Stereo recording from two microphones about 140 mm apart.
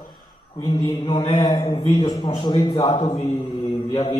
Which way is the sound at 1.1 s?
40° left (ahead or behind).